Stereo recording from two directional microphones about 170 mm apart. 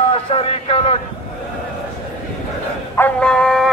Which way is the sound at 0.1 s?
35° left (ahead or behind).